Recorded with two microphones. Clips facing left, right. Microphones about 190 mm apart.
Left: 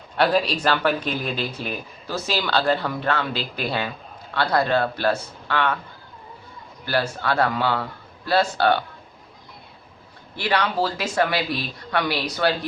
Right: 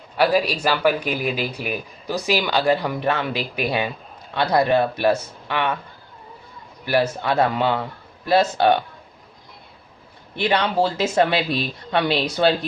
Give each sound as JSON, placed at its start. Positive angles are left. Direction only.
{"t": 0.2, "sound": "speech", "side_deg": -10}
{"t": 6.8, "sound": "speech", "side_deg": -15}
{"t": 10.3, "sound": "speech", "side_deg": -20}